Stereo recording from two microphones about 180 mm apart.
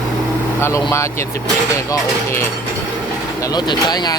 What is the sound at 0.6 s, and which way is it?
Speech, 15° left (ahead or behind).